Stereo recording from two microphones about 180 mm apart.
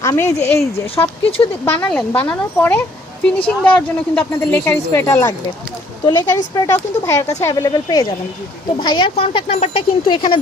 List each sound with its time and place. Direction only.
0.0 s speech: 15° left (ahead or behind)